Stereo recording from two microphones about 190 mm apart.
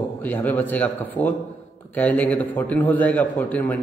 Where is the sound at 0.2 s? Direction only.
10° left (ahead or behind).